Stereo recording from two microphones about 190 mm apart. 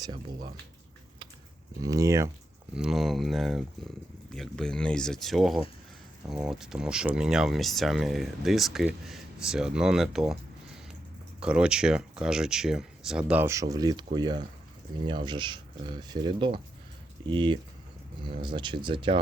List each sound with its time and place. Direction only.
1.8 s speech: 20° right (ahead or behind)
2.7 s speech: centre (ahead or behind)
11.3 s speech: 5° right (ahead or behind); by 19.2 s 25° right (ahead or behind)